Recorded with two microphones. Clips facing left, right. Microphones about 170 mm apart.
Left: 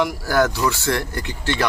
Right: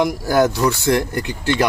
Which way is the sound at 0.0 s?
20° right (ahead or behind).